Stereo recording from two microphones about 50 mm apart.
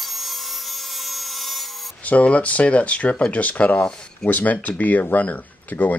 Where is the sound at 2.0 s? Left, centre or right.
Left.